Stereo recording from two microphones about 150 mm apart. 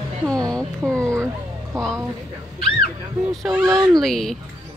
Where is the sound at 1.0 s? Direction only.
20° right (ahead or behind).